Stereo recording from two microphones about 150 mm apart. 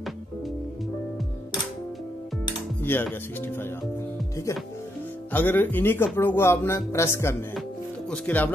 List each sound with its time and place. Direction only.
2.8 s speech: 15° left (ahead or behind)
5.3 s speech: 10° left (ahead or behind)